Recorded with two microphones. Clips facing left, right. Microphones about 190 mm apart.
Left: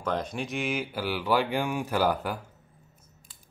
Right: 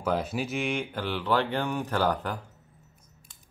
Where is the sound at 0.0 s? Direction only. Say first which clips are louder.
Right 2 dB; 5° right (ahead or behind).